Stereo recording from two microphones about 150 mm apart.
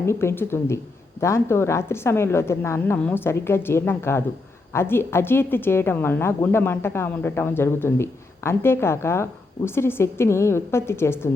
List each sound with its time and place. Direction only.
0.0 s a woman's voice: 15° left (ahead or behind)